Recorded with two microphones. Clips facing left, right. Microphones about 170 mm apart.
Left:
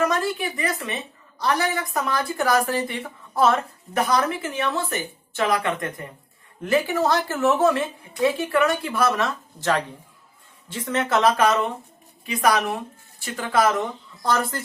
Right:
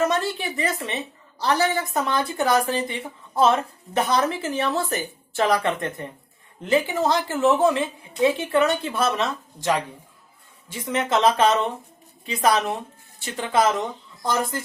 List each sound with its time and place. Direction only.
0.0 s a woman's voice: 25° right (ahead or behind)
6.6 s a woman's voice: 20° right (ahead or behind)